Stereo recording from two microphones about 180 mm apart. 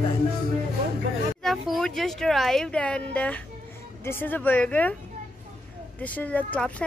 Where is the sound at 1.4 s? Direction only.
Centre (ahead or behind).